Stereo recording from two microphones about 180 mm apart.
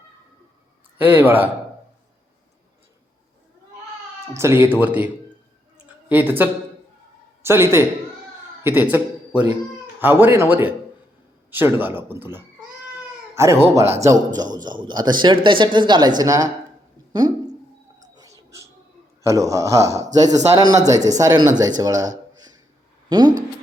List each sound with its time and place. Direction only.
1.0 s a man's voice: 10° right (ahead or behind)
4.4 s a man's voice: 15° right (ahead or behind)
5.7 s a sound: 10° right (ahead or behind)
7.4 s a man's voice: 15° right (ahead or behind)
18.0 s music: 20° right (ahead or behind)
19.2 s a man's voice: 15° right (ahead or behind)